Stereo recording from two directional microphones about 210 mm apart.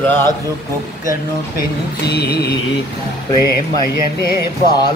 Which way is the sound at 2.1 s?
50° left (ahead or behind).